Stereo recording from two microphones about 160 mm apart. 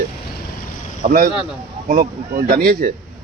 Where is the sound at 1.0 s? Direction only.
60° right (ahead or behind).